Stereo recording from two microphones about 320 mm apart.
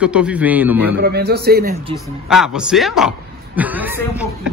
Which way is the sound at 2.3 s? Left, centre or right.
Centre.